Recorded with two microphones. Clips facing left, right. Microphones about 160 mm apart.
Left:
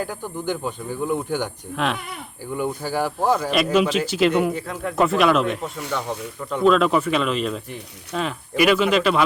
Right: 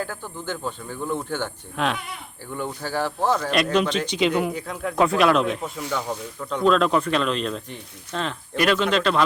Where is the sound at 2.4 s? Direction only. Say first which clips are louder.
Left 5 dB; 15° left (ahead or behind).